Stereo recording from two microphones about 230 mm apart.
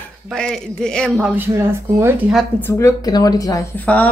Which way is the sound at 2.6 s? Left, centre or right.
Centre.